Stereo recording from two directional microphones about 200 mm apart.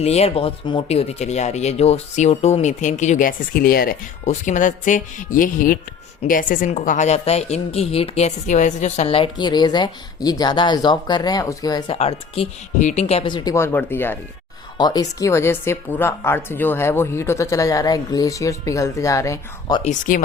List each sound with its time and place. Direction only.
0.0 s a woman's voice: 30° left (ahead or behind)
19.8 s speech: 40° left (ahead or behind)